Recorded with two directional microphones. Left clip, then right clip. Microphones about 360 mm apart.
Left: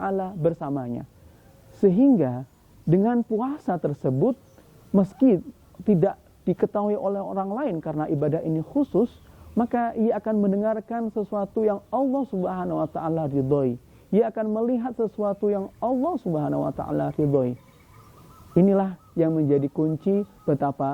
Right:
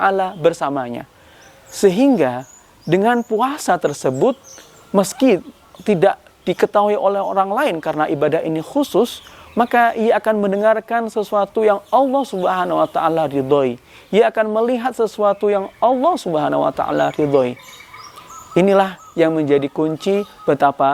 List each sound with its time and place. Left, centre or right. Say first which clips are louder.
0.0 s a man's voice: right 10 dB; centre
11.9 s speech: right 10 dB; centre
12.4 s a man's voice: right 10 dB; centre
18.5 s a man's voice: right 8 dB; centre